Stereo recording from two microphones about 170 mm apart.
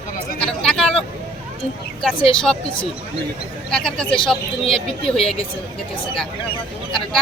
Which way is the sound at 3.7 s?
5° left (ahead or behind).